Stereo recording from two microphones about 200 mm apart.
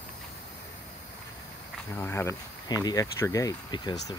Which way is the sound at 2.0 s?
15° left (ahead or behind).